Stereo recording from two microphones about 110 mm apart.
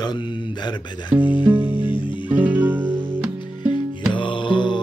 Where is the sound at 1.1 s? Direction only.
15° right (ahead or behind).